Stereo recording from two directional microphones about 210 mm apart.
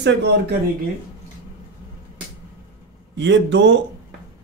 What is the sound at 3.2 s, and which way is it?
Speech, 60° right (ahead or behind).